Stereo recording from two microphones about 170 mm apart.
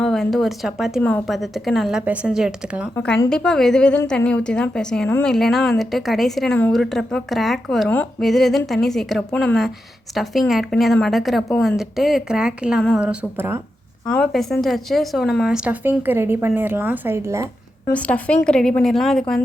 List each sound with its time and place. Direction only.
0.0 s speech: centre (ahead or behind)
2.9 s a woman's voice: 5° left (ahead or behind); by 13.6 s 15° right (ahead or behind)
14.1 s speech: 5° left (ahead or behind); by 17.5 s 15° right (ahead or behind)
17.9 s a woman's voice: 5° left (ahead or behind)